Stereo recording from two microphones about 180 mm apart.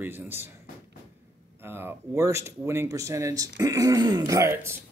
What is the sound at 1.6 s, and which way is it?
Speech, 10° right (ahead or behind).